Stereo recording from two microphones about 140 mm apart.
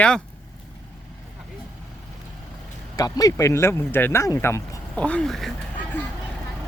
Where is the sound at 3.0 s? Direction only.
25° left (ahead or behind); by 5.5 s centre (ahead or behind).